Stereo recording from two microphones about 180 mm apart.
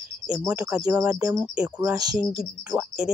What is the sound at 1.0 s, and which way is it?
Speech, 5° right (ahead or behind).